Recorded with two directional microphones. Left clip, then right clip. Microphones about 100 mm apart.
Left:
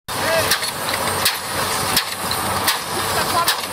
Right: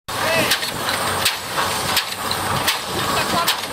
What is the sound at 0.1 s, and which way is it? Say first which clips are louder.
Vehicle: even; centre (ahead or behind).